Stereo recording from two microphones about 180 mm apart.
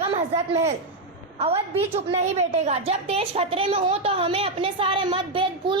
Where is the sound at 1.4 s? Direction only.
35° right (ahead or behind).